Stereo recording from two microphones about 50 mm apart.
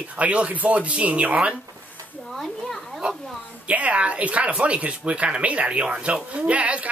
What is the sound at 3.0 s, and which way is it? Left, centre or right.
Speech, centre.